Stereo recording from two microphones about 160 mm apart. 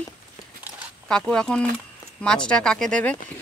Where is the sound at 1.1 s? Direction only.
5° left (ahead or behind).